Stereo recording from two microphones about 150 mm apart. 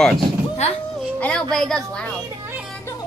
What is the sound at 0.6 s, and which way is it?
Speech, 45° left (ahead or behind).